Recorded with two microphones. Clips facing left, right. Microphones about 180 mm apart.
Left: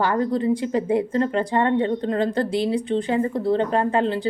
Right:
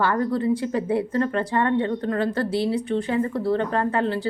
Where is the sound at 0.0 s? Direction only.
20° left (ahead or behind).